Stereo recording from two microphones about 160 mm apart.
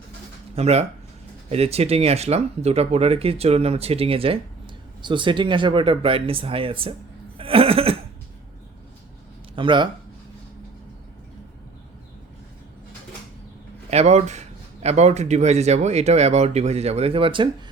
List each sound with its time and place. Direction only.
0.5 s speech: 40° right (ahead or behind)
7.3 s a sound: 35° right (ahead or behind)
9.6 s speech: 30° right (ahead or behind)
13.9 s speech: 40° right (ahead or behind)